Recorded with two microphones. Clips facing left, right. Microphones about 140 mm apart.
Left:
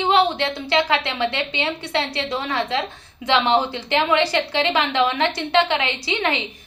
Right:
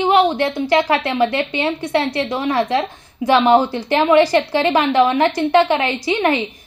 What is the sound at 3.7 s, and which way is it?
A woman's voice, 40° right (ahead or behind).